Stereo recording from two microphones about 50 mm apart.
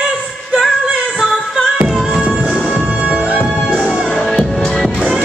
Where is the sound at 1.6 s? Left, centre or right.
Centre.